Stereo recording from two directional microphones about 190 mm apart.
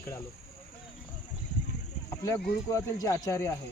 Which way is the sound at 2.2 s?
20° left (ahead or behind).